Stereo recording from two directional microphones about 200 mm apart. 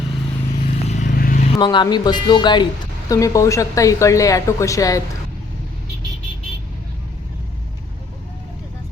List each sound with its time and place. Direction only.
0.5 s vehicle: 40° left (ahead or behind)
1.5 s a woman's voice: 20° left (ahead or behind)